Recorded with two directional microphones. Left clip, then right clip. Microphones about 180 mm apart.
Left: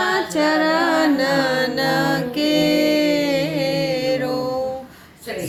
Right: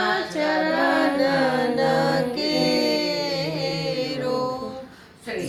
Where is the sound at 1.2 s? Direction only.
60° left (ahead or behind); by 4.4 s 40° left (ahead or behind).